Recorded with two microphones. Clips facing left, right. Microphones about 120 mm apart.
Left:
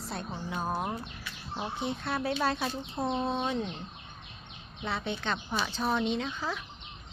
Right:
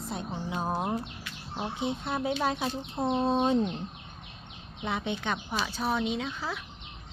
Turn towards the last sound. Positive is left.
turn(degrees=-5)  # may be behind; listen again after turning